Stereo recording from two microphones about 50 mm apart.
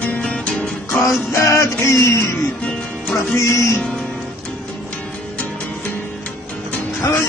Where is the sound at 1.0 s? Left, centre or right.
Left.